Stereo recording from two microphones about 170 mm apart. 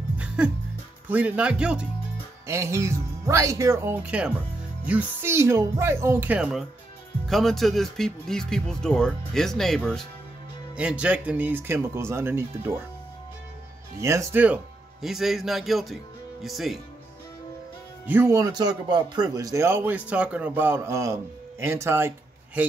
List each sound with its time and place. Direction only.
1.0 s speech: 10° right (ahead or behind)
2.4 s speech: 15° right (ahead or behind)
13.9 s speech: 15° right (ahead or behind); by 16.8 s centre (ahead or behind)
18.0 s speech: 10° right (ahead or behind)